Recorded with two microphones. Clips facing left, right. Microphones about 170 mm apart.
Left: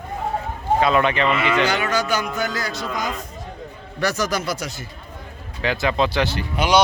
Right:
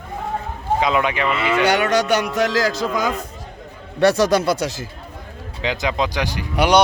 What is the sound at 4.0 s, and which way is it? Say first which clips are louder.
Speech: right 8 dB; 30° right (ahead or behind).